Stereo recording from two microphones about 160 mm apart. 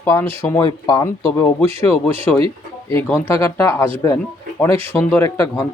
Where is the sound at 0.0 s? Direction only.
15° left (ahead or behind).